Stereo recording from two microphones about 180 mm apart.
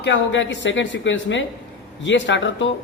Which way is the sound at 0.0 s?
85° left.